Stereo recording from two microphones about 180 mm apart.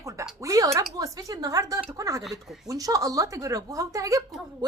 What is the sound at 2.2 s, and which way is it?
Speech, centre (ahead or behind).